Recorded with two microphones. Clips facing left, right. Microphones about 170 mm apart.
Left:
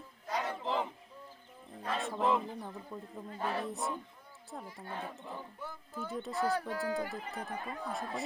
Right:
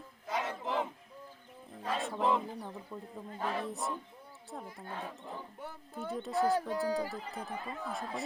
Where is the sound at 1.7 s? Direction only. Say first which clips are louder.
Right 1 dB; centre (ahead or behind).